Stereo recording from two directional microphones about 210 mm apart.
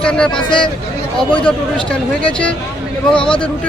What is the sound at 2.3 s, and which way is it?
Speech, 5° left (ahead or behind).